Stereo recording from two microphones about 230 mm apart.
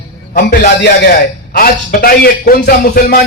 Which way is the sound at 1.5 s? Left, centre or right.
Left.